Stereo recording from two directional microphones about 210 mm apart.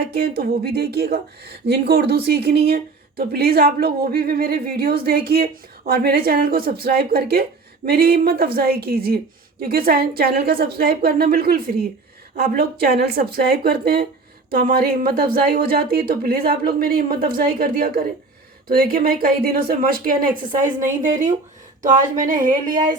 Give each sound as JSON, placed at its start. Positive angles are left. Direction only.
{"t": 0.1, "sound": "speech", "side_deg": -45}